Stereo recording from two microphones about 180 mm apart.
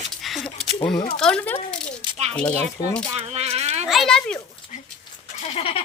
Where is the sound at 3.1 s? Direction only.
35° right (ahead or behind).